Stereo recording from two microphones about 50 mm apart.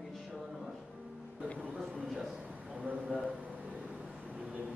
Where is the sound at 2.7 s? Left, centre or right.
Right.